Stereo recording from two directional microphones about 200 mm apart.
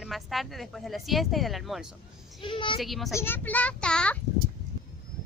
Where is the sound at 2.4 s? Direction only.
25° left (ahead or behind).